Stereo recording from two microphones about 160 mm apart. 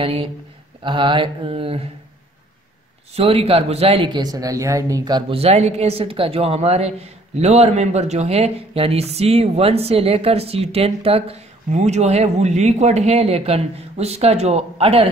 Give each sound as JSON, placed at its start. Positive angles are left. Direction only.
{"t": 0.0, "sound": "a woman's voice", "side_deg": -35}
{"t": 3.2, "sound": "speech", "side_deg": -40}
{"t": 5.4, "sound": "a woman's voice", "side_deg": -40}